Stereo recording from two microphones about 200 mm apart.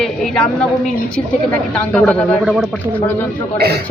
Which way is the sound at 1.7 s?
5° left (ahead or behind).